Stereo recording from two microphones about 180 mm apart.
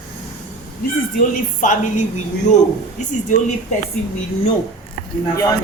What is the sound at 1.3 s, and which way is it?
Speech, 45° left (ahead or behind).